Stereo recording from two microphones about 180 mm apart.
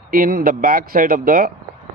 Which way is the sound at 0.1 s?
50° right (ahead or behind).